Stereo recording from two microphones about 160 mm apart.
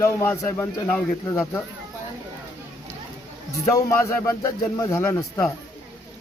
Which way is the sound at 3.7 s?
20° left (ahead or behind).